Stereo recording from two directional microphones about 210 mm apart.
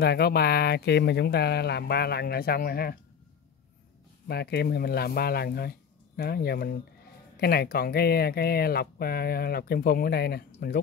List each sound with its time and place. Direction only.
0.0 s speech: 50° left (ahead or behind)
4.3 s speech: 50° left (ahead or behind)